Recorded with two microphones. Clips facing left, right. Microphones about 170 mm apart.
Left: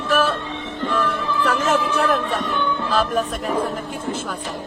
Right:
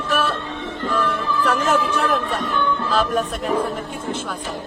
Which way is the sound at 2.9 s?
Centre (ahead or behind).